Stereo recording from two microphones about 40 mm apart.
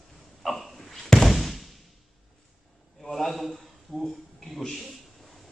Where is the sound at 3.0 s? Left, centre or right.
Centre.